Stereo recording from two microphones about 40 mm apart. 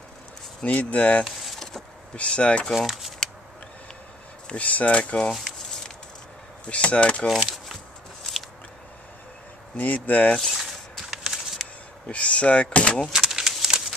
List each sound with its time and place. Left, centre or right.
0.7 s speech: left
2.7 s speech: centre
4.6 s speech: left
5.3 s a sound: centre
6.7 s speech: left
7.2 s a sound: centre
9.8 s speech: left
10.3 s speech: centre
11.0 s a sound: centre
12.1 s speech: left
13.0 s keys jangling: centre
13.7 s a sound: centre